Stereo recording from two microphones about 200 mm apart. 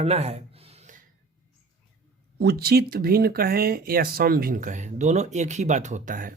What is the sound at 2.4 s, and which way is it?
Speech, 55° right (ahead or behind).